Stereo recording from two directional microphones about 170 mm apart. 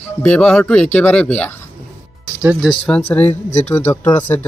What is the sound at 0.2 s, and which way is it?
Speech, 5° left (ahead or behind).